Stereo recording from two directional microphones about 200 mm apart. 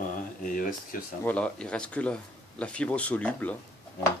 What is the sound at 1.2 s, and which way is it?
Speech, 5° left (ahead or behind).